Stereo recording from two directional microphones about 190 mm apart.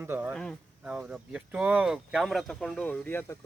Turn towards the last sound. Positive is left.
turn(degrees=10)  # may be behind; listen again after turning